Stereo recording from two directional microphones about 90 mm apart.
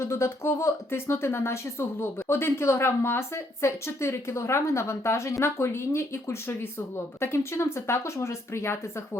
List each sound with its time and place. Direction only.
0.0 s speech: 30° left (ahead or behind)